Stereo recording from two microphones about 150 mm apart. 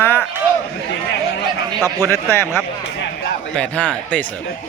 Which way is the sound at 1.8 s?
15° left (ahead or behind).